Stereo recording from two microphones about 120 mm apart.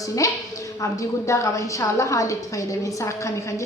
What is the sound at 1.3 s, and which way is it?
A woman's voice, 25° left (ahead or behind).